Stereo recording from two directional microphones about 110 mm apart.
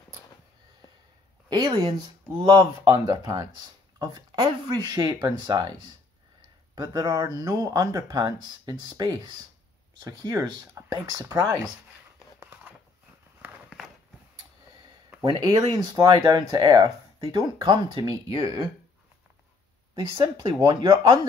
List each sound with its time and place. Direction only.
1.5 s speech: 40° right (ahead or behind)
2.8 s speech: 30° right (ahead or behind)
6.7 s speech: 40° right (ahead or behind)
12.4 s a sound: 20° right (ahead or behind)
15.7 s speech: 35° right (ahead or behind)
20.0 s speech: 40° right (ahead or behind)